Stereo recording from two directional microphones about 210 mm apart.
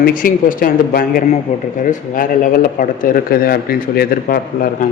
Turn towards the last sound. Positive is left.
turn(degrees=45)  # may be behind; listen again after turning